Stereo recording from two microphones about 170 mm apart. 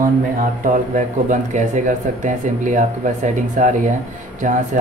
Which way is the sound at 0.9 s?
50° right (ahead or behind).